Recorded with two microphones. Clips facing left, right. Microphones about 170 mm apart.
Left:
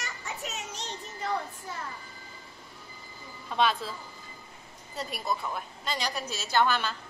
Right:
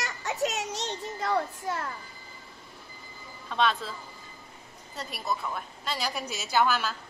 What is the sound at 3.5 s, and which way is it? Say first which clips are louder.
Speech: even; 5° left (ahead or behind).